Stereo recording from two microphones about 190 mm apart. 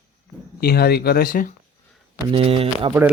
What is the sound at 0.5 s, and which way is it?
Speech, 55° left (ahead or behind).